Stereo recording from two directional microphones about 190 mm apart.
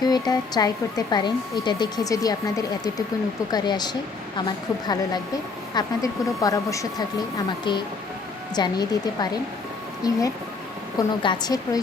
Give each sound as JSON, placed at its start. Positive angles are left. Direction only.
{"t": 0.0, "sound": "speech", "side_deg": 20}